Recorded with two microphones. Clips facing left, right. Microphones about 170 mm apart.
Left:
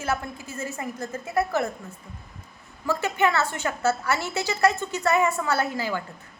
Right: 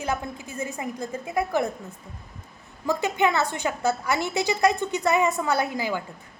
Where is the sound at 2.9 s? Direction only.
15° right (ahead or behind).